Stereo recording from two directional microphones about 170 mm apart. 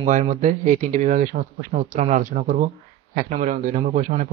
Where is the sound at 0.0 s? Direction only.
45° right (ahead or behind).